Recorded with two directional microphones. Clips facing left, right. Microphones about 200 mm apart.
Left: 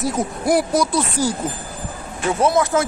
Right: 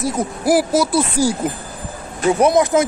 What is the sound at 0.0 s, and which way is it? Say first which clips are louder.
Speech: right 1 dB; centre (ahead or behind).